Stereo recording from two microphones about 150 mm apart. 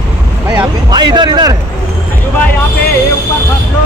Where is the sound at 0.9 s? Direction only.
30° right (ahead or behind).